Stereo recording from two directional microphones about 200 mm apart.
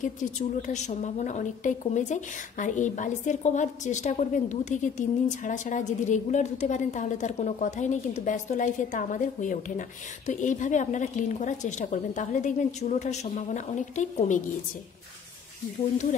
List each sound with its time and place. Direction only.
0.0 s a woman's voice: 40° left (ahead or behind)